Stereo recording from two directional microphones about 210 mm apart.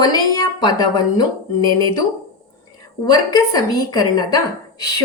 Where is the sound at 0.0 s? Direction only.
20° left (ahead or behind).